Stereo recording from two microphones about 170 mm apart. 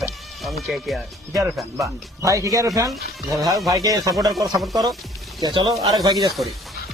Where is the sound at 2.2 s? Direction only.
20° right (ahead or behind).